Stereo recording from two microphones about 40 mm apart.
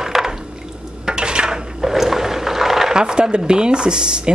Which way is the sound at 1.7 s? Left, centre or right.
Centre.